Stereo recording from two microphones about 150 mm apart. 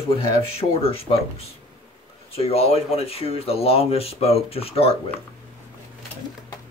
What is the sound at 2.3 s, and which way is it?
Speech, 40° left (ahead or behind).